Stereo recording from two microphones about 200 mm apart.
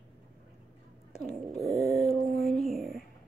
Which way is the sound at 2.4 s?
Centre (ahead or behind).